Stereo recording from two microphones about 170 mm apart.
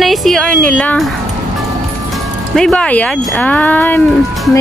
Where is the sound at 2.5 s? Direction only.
5° left (ahead or behind).